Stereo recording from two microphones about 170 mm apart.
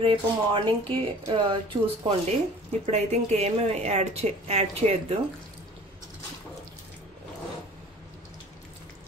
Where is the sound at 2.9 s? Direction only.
40° right (ahead or behind).